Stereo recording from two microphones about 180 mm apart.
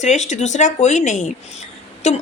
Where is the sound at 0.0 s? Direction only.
40° left (ahead or behind).